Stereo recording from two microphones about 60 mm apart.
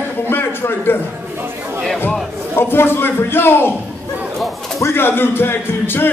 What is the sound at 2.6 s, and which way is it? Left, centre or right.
Speech, left.